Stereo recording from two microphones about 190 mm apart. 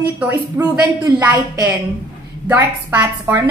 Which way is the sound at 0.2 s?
10° right (ahead or behind).